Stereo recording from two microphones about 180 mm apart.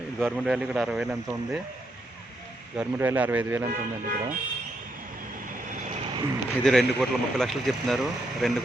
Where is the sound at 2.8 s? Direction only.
10° right (ahead or behind).